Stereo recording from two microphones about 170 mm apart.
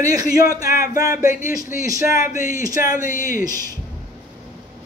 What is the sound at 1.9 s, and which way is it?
A man's voice, 20° right (ahead or behind).